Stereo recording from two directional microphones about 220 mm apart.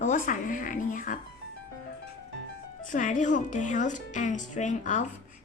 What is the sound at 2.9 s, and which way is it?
Speech, 35° left (ahead or behind).